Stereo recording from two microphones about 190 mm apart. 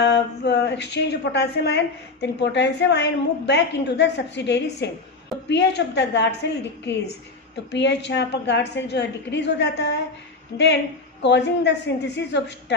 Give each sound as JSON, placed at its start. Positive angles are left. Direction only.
{"t": 0.0, "sound": "a woman's voice", "side_deg": 65}
{"t": 10.5, "sound": "a woman's voice", "side_deg": 20}
{"t": 11.2, "sound": "a woman's voice", "side_deg": 65}